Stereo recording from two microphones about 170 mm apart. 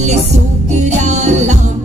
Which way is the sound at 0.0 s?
40° right (ahead or behind).